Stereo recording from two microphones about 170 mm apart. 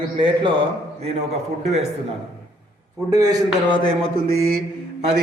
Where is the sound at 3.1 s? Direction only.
20° right (ahead or behind).